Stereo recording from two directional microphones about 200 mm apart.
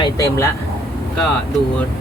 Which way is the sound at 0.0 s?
15° left (ahead or behind).